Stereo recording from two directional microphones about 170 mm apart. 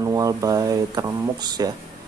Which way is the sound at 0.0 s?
20° right (ahead or behind).